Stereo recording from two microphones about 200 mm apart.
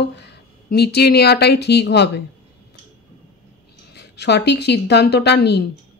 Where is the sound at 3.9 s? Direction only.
55° left (ahead or behind).